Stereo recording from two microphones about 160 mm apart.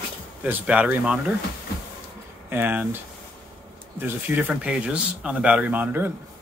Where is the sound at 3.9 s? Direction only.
10° right (ahead or behind).